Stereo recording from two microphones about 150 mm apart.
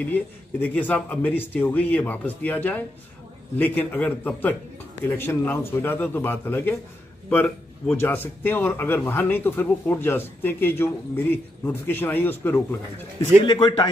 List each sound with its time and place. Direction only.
0.0 s a man's voice: 10° left (ahead or behind)
13.5 s a man's voice: 30° left (ahead or behind)